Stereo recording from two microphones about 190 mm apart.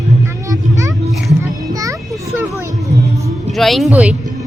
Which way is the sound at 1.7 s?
20° right (ahead or behind).